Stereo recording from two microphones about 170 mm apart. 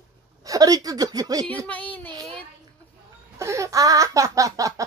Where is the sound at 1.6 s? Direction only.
10° left (ahead or behind).